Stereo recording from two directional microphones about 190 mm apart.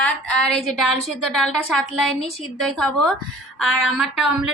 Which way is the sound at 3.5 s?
Centre (ahead or behind).